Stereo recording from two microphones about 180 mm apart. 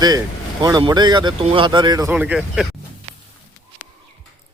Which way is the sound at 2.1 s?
5° right (ahead or behind).